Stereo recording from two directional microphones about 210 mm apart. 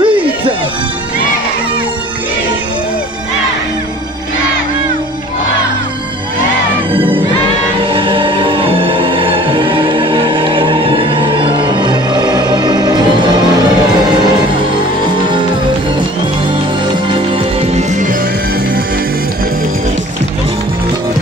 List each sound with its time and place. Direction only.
0.0 s music: 25° right (ahead or behind)
6.9 s music: 25° right (ahead or behind)
17.1 s music: 30° right (ahead or behind)